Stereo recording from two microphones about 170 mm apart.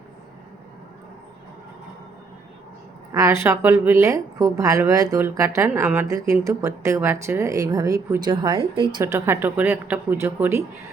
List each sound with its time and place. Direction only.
3.1 s a woman's voice: 20° right (ahead or behind)